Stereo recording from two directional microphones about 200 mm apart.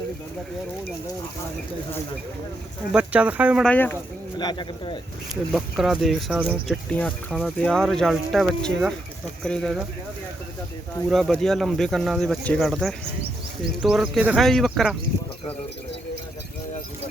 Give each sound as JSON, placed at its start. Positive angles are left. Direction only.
{"t": 2.9, "sound": "speech", "side_deg": -5}
{"t": 3.7, "sound": "speech", "side_deg": 10}
{"t": 4.4, "sound": "speech", "side_deg": 20}
{"t": 5.5, "sound": "speech", "side_deg": 0}
{"t": 11.1, "sound": "speech", "side_deg": 0}